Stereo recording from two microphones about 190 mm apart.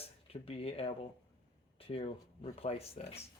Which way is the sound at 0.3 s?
30° left (ahead or behind).